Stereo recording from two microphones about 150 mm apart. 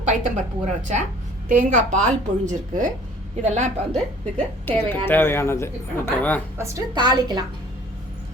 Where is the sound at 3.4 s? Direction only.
50° right (ahead or behind).